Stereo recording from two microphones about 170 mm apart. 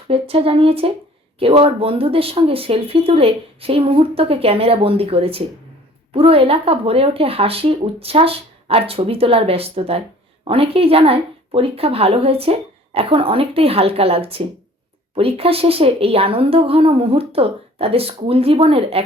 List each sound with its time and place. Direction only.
0.1 s speech: 35° right (ahead or behind)